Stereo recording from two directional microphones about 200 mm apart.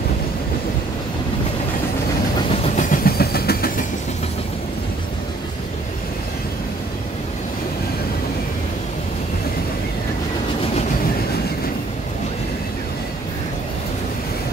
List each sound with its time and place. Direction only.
2.7 s vehicle: 40° left (ahead or behind)